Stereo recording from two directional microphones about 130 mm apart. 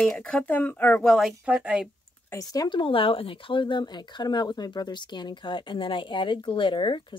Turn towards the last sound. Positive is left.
turn(degrees=40)  # may be behind; listen again after turning